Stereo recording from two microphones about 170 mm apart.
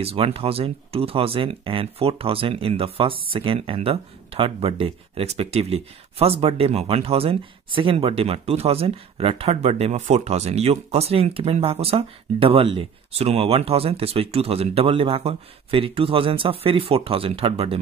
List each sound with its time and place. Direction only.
0.0 s speech: 35° right (ahead or behind)